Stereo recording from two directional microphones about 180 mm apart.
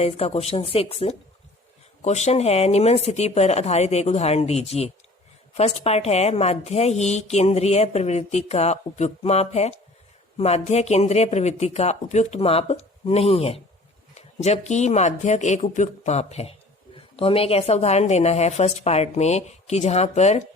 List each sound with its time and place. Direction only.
0.0 s speech: 35° left (ahead or behind)